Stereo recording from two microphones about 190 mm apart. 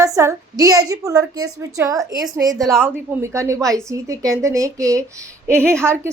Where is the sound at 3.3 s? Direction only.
15° right (ahead or behind).